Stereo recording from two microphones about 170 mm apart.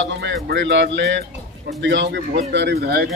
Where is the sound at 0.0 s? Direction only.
85° right; by 3.1 s 65° right (ahead or behind).